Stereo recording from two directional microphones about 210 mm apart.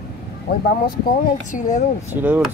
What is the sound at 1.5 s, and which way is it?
Speech, 35° left (ahead or behind).